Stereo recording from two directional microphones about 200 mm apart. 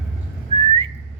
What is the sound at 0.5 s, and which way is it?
Whistling, 30° right (ahead or behind).